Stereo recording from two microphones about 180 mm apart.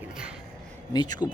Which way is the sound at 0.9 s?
25° left (ahead or behind).